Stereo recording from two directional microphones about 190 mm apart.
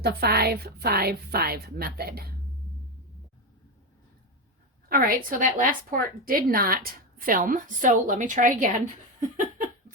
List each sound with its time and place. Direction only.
0.0 s a woman's voice: 55° right (ahead or behind)
4.9 s a woman's voice: 45° right (ahead or behind)